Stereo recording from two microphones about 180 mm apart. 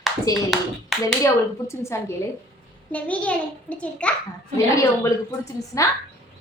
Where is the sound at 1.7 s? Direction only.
15° left (ahead or behind).